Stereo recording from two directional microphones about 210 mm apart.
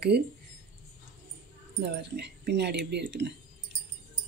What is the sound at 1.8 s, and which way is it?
Speech, 50° right (ahead or behind).